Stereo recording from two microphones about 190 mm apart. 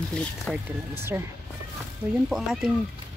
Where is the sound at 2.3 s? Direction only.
Centre (ahead or behind).